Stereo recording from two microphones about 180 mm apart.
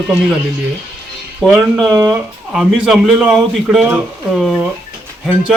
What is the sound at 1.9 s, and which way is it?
Speech, 20° right (ahead or behind).